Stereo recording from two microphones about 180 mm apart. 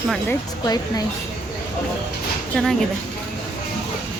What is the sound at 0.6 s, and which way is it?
Speech, 20° left (ahead or behind).